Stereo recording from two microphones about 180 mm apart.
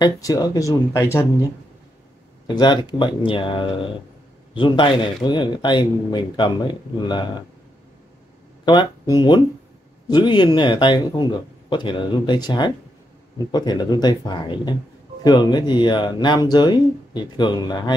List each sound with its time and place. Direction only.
0.0 s speech: 20° left (ahead or behind)
2.4 s speech: 25° left (ahead or behind)
8.6 s speech: 25° left (ahead or behind)